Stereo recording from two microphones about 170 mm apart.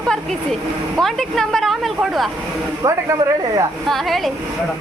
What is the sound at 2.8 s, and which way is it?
Speech, 20° right (ahead or behind).